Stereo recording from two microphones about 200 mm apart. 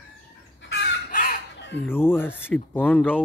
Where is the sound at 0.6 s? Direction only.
60° left (ahead or behind).